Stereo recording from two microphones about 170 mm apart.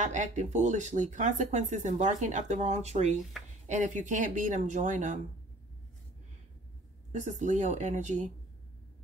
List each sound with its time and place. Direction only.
0.0 s speech: 45° right (ahead or behind)
7.1 s speech: 45° right (ahead or behind)